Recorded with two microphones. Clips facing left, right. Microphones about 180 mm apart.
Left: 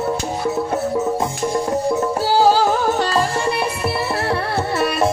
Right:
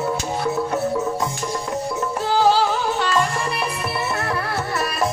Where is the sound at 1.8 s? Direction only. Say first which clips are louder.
Left 5 dB; 30° left (ahead or behind).